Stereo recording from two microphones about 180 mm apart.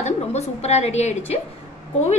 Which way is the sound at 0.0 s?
35° left (ahead or behind).